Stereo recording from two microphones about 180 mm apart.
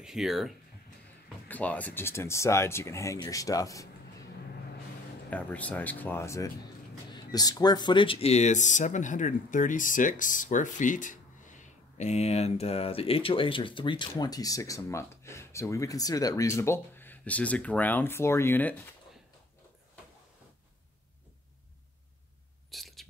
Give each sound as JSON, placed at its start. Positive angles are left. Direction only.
{"t": 0.0, "sound": "speech", "side_deg": 0}
{"t": 5.3, "sound": "speech", "side_deg": 10}
{"t": 22.7, "sound": "whispering", "side_deg": 0}